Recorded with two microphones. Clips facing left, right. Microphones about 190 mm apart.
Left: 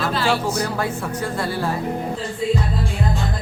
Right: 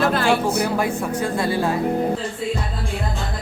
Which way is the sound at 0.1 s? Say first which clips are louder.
Right 2 dB; 55° right (ahead or behind).